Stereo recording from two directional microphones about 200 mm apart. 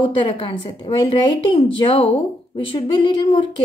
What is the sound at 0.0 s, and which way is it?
A woman's voice, 25° left (ahead or behind).